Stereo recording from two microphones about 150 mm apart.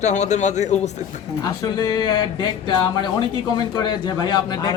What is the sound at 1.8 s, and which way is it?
Speech, 30° left (ahead or behind).